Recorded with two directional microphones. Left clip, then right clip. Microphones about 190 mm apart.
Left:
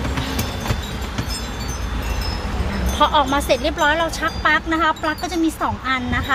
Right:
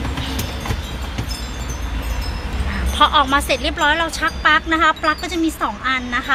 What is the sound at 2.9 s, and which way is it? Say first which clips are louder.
Speech: right 2 dB; 10° left (ahead or behind).